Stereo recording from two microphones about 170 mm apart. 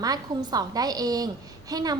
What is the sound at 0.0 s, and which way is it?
A woman's voice, 20° right (ahead or behind).